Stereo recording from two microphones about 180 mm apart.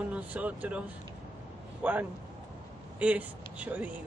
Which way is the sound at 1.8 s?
10° right (ahead or behind).